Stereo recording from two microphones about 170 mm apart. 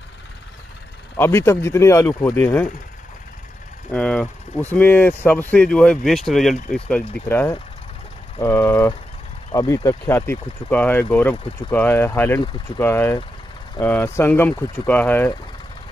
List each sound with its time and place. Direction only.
1.1 s speech: 15° left (ahead or behind)
3.9 s speech: 5° left (ahead or behind)